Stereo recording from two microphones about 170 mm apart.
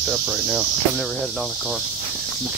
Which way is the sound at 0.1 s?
10° right (ahead or behind).